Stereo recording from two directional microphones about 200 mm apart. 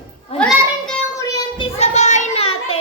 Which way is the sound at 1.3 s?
20° left (ahead or behind).